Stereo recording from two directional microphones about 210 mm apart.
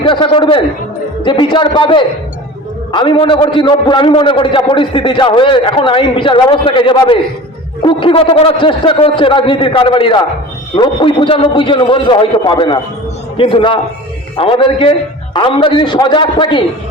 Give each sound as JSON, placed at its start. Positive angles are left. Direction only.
{"t": 0.0, "sound": "a man's voice", "side_deg": 25}